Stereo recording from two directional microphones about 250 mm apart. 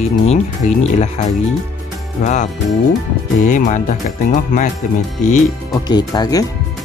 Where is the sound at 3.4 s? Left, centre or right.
Left.